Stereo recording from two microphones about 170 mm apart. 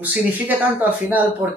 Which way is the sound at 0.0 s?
10° right (ahead or behind).